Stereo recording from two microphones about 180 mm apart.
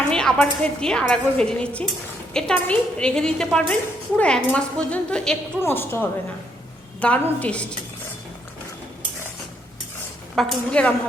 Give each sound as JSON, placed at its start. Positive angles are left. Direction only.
{"t": 0.1, "sound": "a woman's voice", "side_deg": 5}
{"t": 10.3, "sound": "a woman's voice", "side_deg": 5}